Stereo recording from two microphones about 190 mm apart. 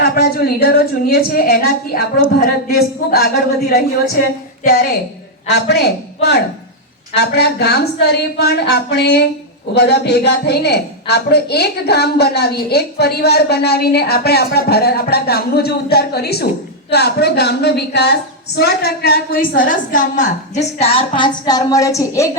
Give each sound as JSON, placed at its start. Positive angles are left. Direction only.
{"t": 0.0, "sound": "a woman's voice", "side_deg": 55}